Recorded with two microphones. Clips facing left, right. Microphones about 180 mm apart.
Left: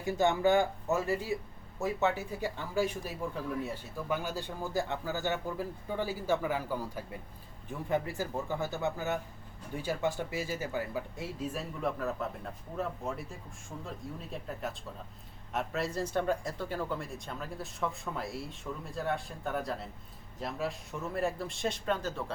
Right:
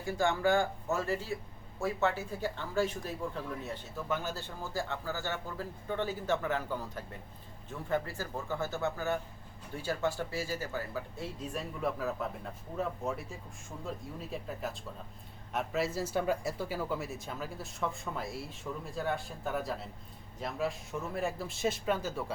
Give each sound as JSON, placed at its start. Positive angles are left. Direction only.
{"t": 0.0, "sound": "speech", "side_deg": 20}